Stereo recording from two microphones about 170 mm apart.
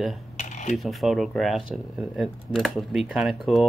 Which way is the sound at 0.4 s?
45° left (ahead or behind).